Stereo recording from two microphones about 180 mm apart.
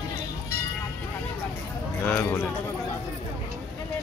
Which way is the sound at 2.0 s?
10° left (ahead or behind).